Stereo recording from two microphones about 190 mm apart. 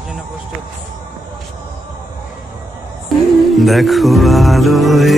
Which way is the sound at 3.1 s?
Centre (ahead or behind).